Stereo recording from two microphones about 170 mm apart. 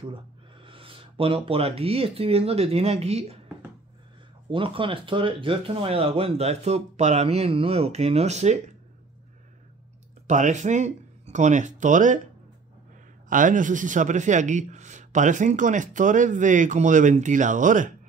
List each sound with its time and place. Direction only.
0.0 s speech: 30° right (ahead or behind)
4.5 s speech: 30° right (ahead or behind)
10.2 s speech: 45° right (ahead or behind)
13.3 s speech: 50° right (ahead or behind)